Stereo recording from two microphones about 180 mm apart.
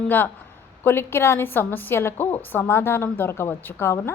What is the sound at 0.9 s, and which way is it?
A woman's voice, 15° left (ahead or behind).